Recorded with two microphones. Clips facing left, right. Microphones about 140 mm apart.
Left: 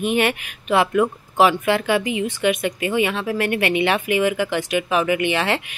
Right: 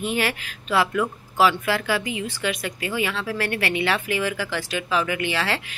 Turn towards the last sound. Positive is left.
turn(degrees=20)  # may be behind; listen again after turning